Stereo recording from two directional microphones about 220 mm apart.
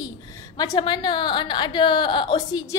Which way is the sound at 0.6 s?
20° left (ahead or behind).